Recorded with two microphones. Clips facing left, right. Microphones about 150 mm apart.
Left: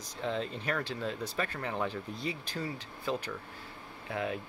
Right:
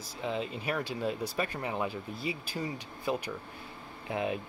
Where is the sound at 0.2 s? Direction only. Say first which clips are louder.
Even; 10° right (ahead or behind).